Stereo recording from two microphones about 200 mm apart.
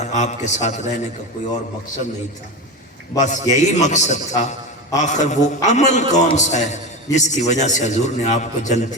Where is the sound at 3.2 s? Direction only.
40° left (ahead or behind).